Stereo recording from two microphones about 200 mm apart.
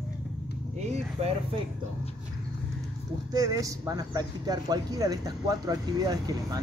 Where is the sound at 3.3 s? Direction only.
15° right (ahead or behind).